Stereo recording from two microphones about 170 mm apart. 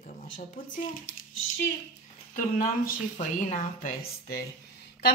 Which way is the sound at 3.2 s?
45° left (ahead or behind).